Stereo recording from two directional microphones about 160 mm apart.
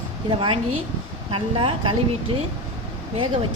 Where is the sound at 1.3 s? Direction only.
30° right (ahead or behind).